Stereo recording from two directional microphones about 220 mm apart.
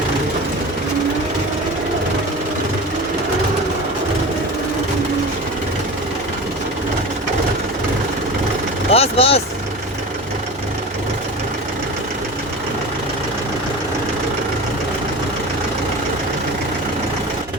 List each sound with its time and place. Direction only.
8.9 s vehicle: 25° left (ahead or behind)